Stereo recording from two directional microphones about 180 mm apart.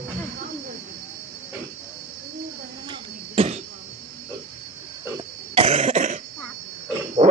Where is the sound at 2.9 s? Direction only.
35° right (ahead or behind).